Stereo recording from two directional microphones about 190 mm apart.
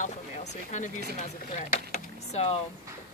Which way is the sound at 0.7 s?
40° left (ahead or behind).